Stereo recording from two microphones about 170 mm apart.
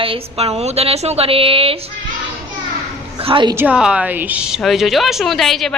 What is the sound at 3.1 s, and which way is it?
Speech, 30° right (ahead or behind).